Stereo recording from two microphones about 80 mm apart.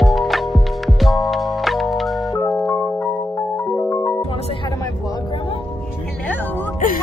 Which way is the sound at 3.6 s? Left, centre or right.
Centre.